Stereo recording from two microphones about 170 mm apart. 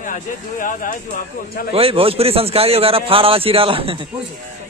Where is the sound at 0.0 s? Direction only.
50° left (ahead or behind).